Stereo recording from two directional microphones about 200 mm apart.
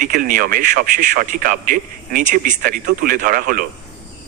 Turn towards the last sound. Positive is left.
turn(degrees=-45)  # may be behind; listen again after turning